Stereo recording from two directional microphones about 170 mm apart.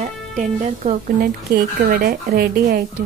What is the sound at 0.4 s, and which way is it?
Speech, 50° right (ahead or behind).